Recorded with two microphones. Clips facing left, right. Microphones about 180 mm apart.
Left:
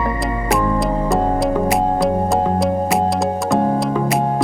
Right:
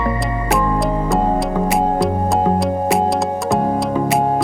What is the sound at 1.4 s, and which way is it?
Music, centre (ahead or behind).